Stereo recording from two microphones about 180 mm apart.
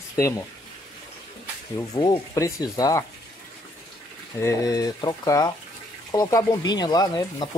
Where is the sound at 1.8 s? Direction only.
20° left (ahead or behind).